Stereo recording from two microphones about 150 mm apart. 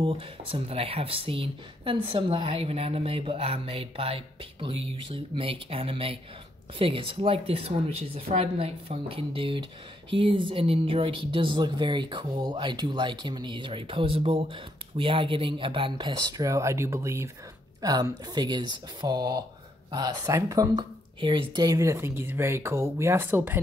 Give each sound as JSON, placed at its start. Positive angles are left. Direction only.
{"t": 0.0, "sound": "speech", "side_deg": -40}